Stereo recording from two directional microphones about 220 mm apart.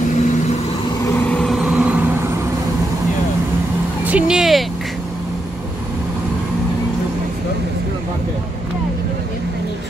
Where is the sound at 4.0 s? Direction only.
5° right (ahead or behind).